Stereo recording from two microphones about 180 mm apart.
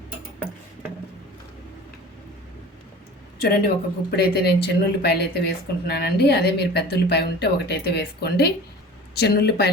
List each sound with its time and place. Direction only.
3.3 s speech: 55° left (ahead or behind)